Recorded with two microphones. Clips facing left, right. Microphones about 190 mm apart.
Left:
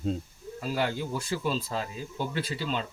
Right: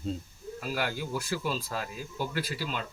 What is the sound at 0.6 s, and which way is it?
Speech, 25° left (ahead or behind).